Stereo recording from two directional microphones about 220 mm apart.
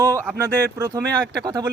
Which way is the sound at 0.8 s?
15° right (ahead or behind).